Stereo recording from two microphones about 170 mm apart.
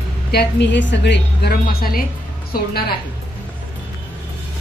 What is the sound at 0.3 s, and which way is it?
A woman's voice, 80° left.